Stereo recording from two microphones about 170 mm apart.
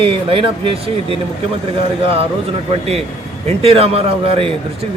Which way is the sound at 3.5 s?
35° right (ahead or behind).